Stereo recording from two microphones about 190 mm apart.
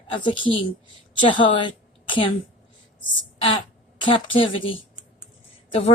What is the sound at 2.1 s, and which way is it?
Speech, 25° left (ahead or behind).